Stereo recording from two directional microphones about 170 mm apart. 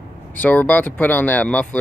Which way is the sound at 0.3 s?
10° left (ahead or behind).